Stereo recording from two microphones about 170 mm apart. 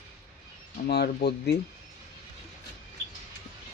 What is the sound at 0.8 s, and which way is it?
Speech, 70° left (ahead or behind).